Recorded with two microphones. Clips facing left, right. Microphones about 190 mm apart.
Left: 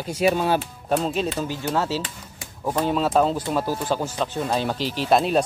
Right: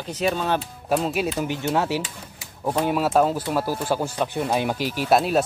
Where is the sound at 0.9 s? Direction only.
5° right (ahead or behind).